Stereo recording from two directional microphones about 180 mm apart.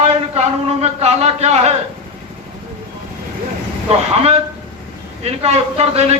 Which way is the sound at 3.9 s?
35° right (ahead or behind).